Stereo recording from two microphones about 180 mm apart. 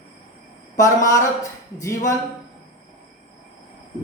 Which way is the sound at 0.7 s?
20° left (ahead or behind).